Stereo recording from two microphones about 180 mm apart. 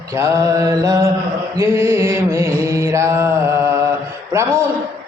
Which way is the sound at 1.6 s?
15° right (ahead or behind).